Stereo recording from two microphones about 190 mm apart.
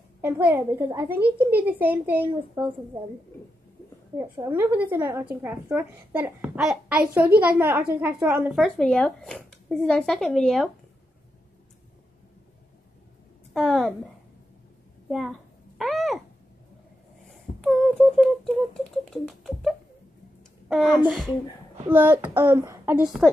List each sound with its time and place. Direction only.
0.2 s a child's voice: 10° right (ahead or behind)
4.2 s a woman's voice: 20° right (ahead or behind)
8.5 s speech: 5° left (ahead or behind)
13.5 s a woman's voice: centre (ahead or behind)
15.0 s a woman's voice: centre (ahead or behind)
15.8 s a sound: centre (ahead or behind)
17.6 s a sound: centre (ahead or behind)
21.1 s a child's voice: centre (ahead or behind)